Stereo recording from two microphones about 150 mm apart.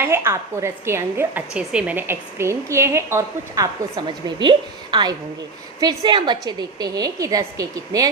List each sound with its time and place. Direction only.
0.0 s a woman's voice: 15° right (ahead or behind)